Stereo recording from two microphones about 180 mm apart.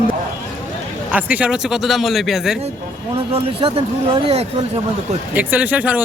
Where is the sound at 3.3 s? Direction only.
30° right (ahead or behind).